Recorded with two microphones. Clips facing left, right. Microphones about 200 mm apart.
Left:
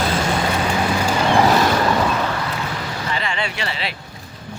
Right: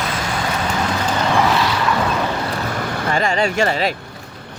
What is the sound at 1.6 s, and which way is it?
Boat, 45° left (ahead or behind).